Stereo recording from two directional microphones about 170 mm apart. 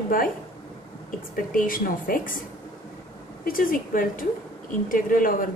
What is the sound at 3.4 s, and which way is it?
A woman's voice, 55° left (ahead or behind).